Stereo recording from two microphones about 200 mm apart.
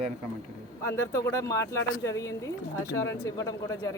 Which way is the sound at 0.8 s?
15° left (ahead or behind).